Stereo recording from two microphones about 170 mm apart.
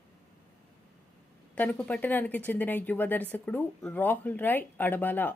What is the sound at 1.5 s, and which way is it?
Speech, 10° left (ahead or behind).